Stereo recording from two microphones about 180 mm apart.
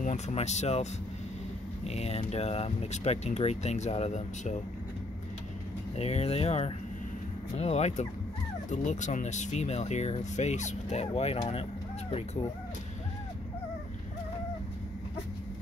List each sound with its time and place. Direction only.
0.0 s speech: 40° left (ahead or behind)
1.9 s speech: 35° left (ahead or behind)
5.9 s speech: 35° left (ahead or behind)